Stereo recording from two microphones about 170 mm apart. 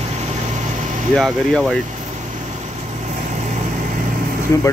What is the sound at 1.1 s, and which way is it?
Speech, centre (ahead or behind).